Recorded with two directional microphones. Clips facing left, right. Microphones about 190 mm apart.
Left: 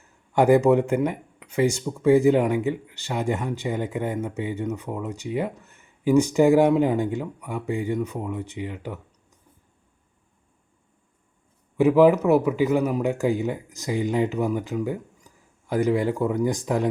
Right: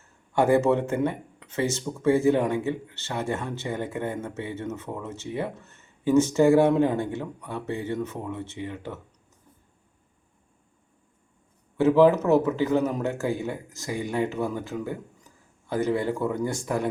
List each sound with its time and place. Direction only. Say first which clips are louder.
0.0 s speech: left 3 dB; 15° left (ahead or behind)
11.8 s speech: left 2 dB; 15° left (ahead or behind)